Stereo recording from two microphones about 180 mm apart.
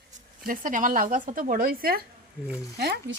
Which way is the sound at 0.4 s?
50° right (ahead or behind).